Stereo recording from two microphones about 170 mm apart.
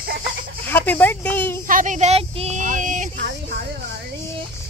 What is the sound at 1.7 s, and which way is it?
Speech, 50° right (ahead or behind).